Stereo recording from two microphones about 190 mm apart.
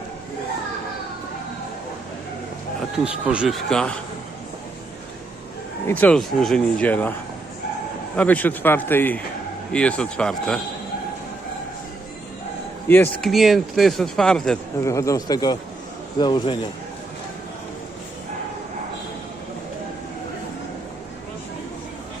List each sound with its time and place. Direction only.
3.0 s speech: 5° right (ahead or behind)
5.9 s speech: 5° left (ahead or behind)
8.1 s speech: 5° left (ahead or behind)
12.9 s speech: 10° left (ahead or behind)
13.3 s speech: centre (ahead or behind)
14.8 s speech: 15° left (ahead or behind)